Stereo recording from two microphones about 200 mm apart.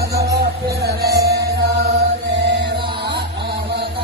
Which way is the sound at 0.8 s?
55° right (ahead or behind).